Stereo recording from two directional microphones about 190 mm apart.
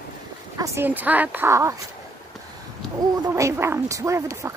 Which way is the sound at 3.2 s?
15° right (ahead or behind).